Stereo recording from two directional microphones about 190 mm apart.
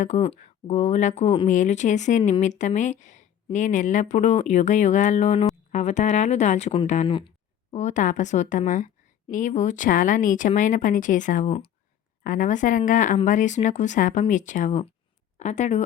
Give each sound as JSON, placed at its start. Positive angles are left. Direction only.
{"t": 0.0, "sound": "speech", "side_deg": 40}
{"t": 7.1, "sound": "a sound", "side_deg": 25}
{"t": 7.8, "sound": "speech", "side_deg": 40}
{"t": 12.2, "sound": "speech", "side_deg": 45}